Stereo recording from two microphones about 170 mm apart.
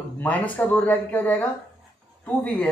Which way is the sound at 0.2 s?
10° left (ahead or behind).